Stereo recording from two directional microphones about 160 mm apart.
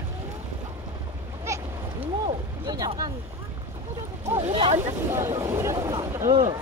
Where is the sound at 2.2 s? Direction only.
25° right (ahead or behind).